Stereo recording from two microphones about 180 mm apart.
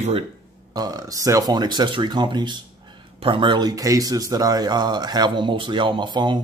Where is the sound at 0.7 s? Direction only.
20° right (ahead or behind).